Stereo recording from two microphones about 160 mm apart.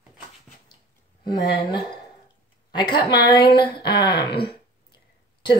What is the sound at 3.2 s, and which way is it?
Speech, 75° left (ahead or behind).